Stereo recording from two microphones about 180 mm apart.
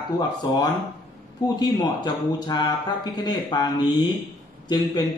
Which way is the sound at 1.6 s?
25° left (ahead or behind).